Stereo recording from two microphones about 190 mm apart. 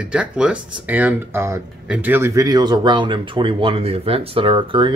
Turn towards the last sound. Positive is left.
turn(degrees=-25)  # may be behind; listen again after turning